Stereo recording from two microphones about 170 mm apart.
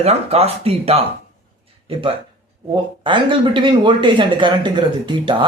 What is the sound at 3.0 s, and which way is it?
Speech, 30° right (ahead or behind).